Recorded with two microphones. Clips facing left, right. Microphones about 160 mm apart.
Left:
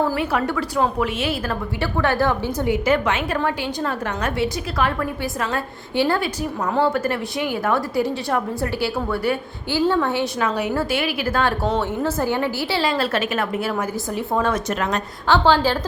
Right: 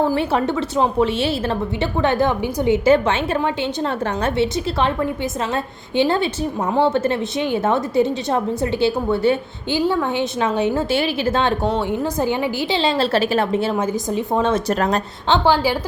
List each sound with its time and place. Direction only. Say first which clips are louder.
0.1 s a woman's voice: right 3 dB; 25° right (ahead or behind)
14.7 s a woman's voice: right 4 dB; 35° right (ahead or behind)
15.3 s a woman's voice: even; 10° right (ahead or behind)